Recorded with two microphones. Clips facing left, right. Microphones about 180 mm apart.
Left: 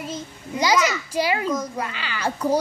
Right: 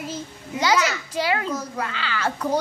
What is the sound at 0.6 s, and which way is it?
A child's voice, 15° left (ahead or behind).